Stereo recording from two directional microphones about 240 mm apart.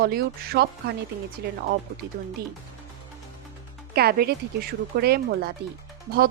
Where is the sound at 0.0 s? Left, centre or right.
Right.